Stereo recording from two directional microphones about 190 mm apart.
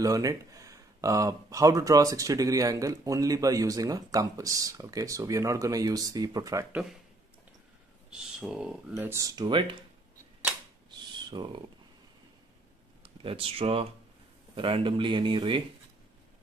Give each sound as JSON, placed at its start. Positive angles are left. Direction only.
{"t": 0.0, "sound": "speech", "side_deg": -20}
{"t": 8.1, "sound": "speech", "side_deg": -5}
{"t": 10.9, "sound": "a sound", "side_deg": -25}
{"t": 13.0, "sound": "speech", "side_deg": -30}